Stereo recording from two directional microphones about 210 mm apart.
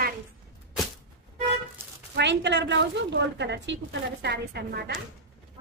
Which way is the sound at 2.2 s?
55° right (ahead or behind).